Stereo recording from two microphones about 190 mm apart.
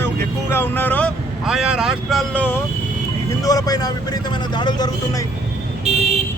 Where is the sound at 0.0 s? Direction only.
10° left (ahead or behind).